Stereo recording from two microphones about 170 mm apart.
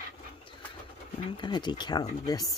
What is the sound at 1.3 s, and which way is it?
Speech, 25° left (ahead or behind).